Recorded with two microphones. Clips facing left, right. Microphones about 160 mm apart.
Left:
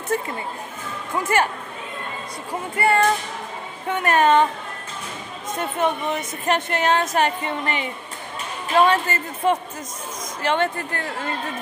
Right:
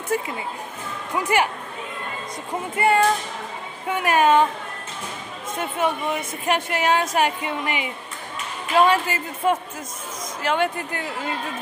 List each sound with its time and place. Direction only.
0.1 s a woman's voice: 10° right (ahead or behind)
2.7 s a woman's voice: 15° right (ahead or behind)
5.6 s a woman's voice: 5° right (ahead or behind)